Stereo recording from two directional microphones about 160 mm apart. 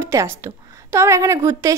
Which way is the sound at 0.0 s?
15° right (ahead or behind).